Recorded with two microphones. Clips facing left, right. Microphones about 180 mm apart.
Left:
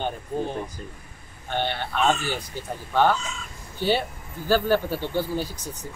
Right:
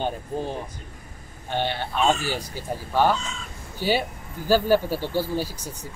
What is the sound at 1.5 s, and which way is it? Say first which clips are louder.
Speech: right 1 dB; 10° right (ahead or behind).